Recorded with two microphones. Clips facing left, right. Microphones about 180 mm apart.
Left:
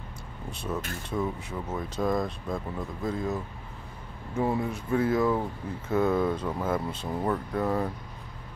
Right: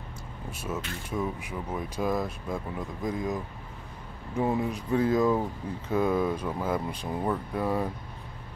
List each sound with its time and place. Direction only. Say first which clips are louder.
0.5 s speech: left 1 dB; 10° right (ahead or behind)